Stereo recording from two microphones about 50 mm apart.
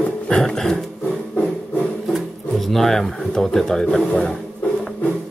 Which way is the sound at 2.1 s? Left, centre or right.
Centre.